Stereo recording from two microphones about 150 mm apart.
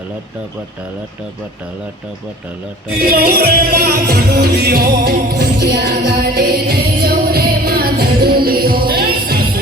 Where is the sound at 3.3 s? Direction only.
90° right.